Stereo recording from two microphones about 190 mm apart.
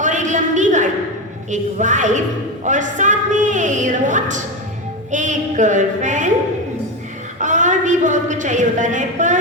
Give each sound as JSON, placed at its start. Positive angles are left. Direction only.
{"t": 0.0, "sound": "a sound", "side_deg": -40}
{"t": 1.5, "sound": "a woman's voice", "side_deg": -40}
{"t": 7.3, "sound": "a woman's voice", "side_deg": -40}